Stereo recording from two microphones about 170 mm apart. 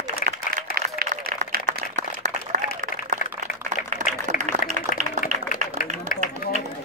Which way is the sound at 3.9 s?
45° right (ahead or behind).